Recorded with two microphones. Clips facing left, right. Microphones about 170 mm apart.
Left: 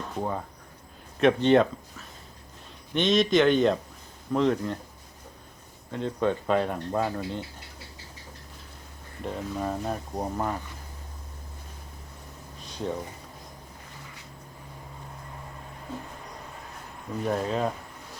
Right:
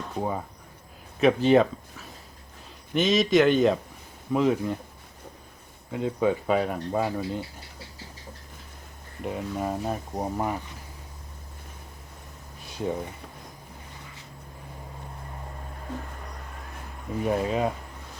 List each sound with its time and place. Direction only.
0.2 s speech: 10° right (ahead or behind)
5.9 s speech: 10° right (ahead or behind)
9.2 s speech: 10° right (ahead or behind)
12.6 s a sound: 10° right (ahead or behind)
17.2 s speech: 5° right (ahead or behind)